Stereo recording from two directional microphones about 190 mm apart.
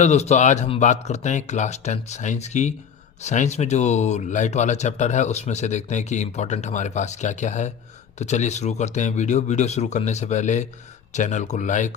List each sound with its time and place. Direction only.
0.0 s speech: 35° left (ahead or behind)